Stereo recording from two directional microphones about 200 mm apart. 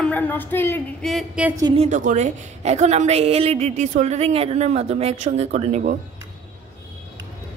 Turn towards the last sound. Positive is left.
turn(degrees=-35)  # may be behind; listen again after turning